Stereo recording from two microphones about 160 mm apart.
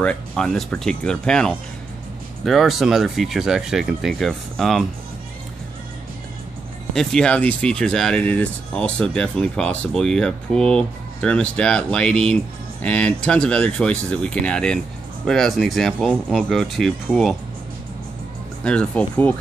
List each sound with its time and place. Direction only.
0.0 s speech: 5° left (ahead or behind)
6.9 s speech: 5° left (ahead or behind)
18.6 s speech: 5° left (ahead or behind)